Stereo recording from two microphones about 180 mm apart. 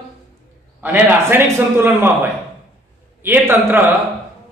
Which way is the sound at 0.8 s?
10° right (ahead or behind).